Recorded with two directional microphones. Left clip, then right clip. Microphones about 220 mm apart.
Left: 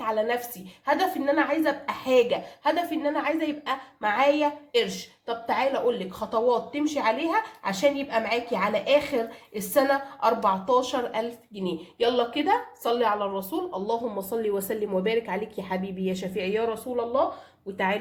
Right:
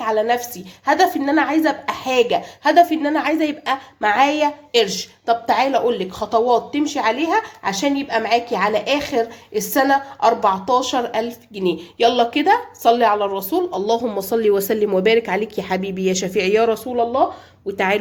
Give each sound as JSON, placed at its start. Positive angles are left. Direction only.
{"t": 0.0, "sound": "a woman's voice", "side_deg": -45}
{"t": 17.7, "sound": "speech", "side_deg": -45}